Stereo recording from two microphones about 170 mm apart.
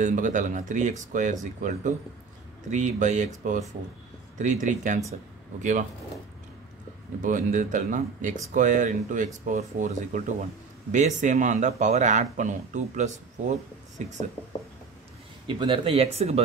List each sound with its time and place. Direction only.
0.0 s speech: 50° right (ahead or behind)
4.4 s speech: 45° right (ahead or behind)
7.2 s speech: 50° right (ahead or behind)
15.4 s speech: 30° right (ahead or behind)